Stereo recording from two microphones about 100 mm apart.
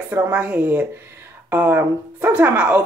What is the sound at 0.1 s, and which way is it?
Speech, 15° right (ahead or behind).